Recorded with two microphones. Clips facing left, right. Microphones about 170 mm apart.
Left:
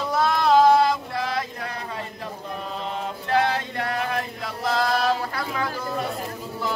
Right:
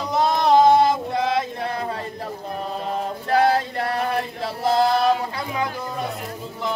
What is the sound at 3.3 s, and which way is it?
Male singing, 40° right (ahead or behind).